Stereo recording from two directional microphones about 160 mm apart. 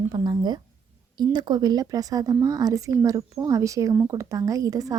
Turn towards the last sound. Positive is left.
turn(degrees=-20)  # may be behind; listen again after turning